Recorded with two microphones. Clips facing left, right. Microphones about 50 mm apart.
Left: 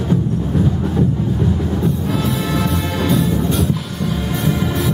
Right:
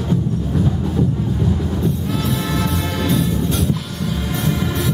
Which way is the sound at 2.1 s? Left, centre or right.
Centre.